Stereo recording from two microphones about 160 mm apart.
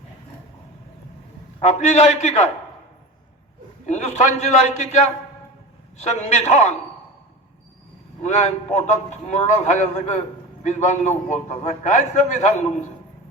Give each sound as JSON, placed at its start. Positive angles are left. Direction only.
{"t": 1.6, "sound": "a man's voice", "side_deg": 50}
{"t": 3.8, "sound": "a man's voice", "side_deg": 45}
{"t": 8.2, "sound": "a man's voice", "side_deg": 45}